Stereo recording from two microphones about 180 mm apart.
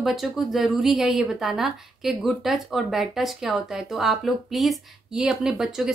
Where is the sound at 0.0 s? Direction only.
Centre (ahead or behind).